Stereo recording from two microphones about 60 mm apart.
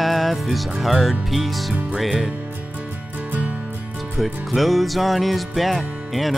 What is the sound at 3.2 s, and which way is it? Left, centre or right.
Music, right.